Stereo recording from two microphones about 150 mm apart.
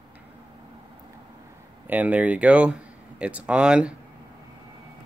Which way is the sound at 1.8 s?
10° right (ahead or behind).